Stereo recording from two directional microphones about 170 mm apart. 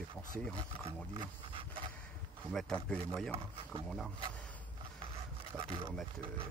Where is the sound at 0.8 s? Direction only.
30° right (ahead or behind).